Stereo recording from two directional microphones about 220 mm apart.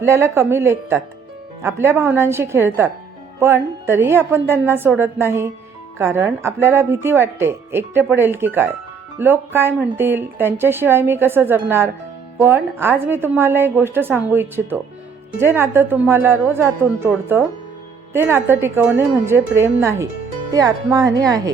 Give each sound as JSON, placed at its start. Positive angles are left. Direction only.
{"t": 0.0, "sound": "a woman's voice", "side_deg": -10}